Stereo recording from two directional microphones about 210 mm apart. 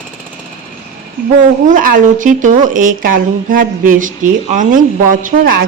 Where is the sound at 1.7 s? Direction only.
40° right (ahead or behind).